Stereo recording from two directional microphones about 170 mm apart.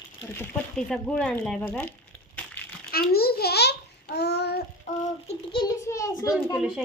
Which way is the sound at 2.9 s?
65° left (ahead or behind).